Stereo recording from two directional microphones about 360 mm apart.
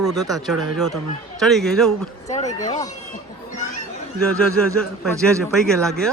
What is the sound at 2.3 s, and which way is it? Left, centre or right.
Speech, centre.